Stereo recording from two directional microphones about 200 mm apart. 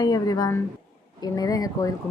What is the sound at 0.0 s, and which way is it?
A woman's voice, 20° left (ahead or behind).